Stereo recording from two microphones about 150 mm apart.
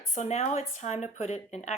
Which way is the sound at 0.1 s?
45° left (ahead or behind).